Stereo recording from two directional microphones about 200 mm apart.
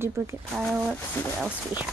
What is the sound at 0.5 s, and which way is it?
Speech, centre (ahead or behind).